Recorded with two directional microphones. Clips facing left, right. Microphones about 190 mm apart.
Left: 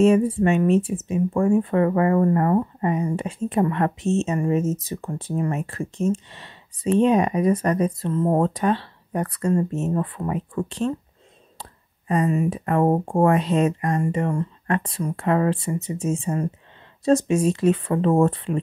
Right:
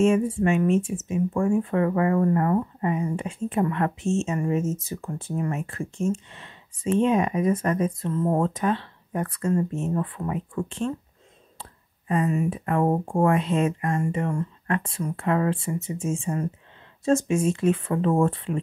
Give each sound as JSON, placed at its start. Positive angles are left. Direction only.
{"t": 0.0, "sound": "speech", "side_deg": 35}
{"t": 12.1, "sound": "speech", "side_deg": 35}